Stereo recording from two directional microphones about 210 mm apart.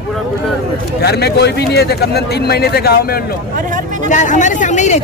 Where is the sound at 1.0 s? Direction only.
50° left (ahead or behind).